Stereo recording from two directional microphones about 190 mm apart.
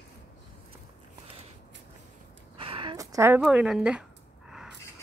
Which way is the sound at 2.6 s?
30° right (ahead or behind).